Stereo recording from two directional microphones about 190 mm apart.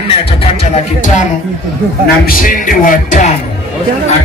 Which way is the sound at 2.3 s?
45° left (ahead or behind).